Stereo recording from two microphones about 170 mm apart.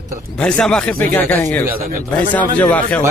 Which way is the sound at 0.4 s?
5° left (ahead or behind).